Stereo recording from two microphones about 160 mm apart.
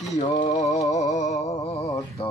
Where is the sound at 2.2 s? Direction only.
30° left (ahead or behind).